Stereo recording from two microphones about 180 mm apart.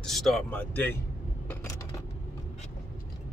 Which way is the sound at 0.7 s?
10° left (ahead or behind).